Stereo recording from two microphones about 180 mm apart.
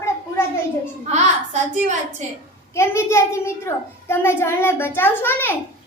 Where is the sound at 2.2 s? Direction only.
40° right (ahead or behind).